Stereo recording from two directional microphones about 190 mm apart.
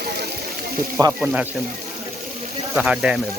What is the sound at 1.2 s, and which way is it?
Speech, 5° right (ahead or behind).